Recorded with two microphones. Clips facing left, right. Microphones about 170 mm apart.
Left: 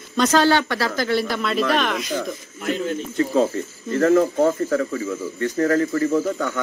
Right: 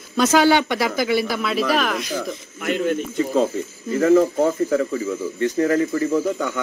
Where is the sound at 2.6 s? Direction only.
65° right (ahead or behind).